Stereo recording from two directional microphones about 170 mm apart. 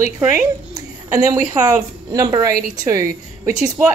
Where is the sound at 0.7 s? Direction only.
20° right (ahead or behind).